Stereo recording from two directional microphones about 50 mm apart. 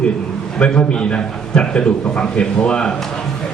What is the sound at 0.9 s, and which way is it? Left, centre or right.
A man's voice, centre.